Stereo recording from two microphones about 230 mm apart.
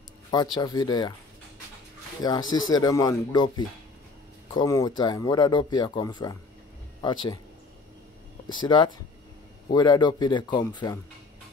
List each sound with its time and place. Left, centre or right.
0.3 s speech: centre
2.2 s speech: centre
8.5 s speech: centre